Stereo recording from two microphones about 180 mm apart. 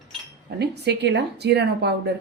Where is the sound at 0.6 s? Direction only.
70° right (ahead or behind).